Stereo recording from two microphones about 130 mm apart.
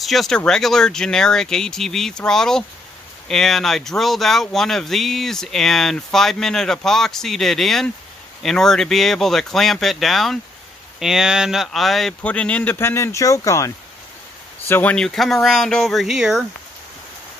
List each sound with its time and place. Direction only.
0.0 s speech: centre (ahead or behind); by 13.7 s 25° left (ahead or behind)
14.7 s speech: 10° left (ahead or behind)